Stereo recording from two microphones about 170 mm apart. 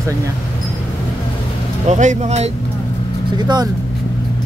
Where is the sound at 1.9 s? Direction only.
45° right (ahead or behind).